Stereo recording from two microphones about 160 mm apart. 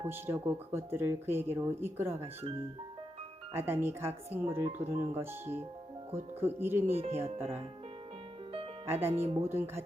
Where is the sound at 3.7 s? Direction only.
15° right (ahead or behind).